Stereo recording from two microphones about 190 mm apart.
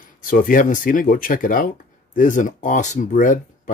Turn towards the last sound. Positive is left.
turn(degrees=45)  # may be behind; listen again after turning